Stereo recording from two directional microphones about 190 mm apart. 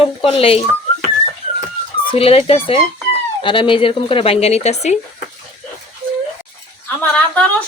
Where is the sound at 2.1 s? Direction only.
30° left (ahead or behind).